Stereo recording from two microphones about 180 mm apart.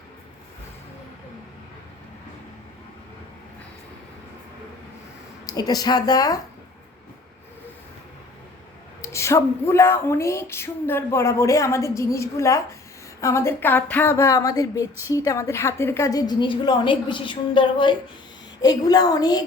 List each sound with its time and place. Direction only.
5.5 s a woman's voice: 20° left (ahead or behind)
9.0 s a woman's voice: 15° left (ahead or behind)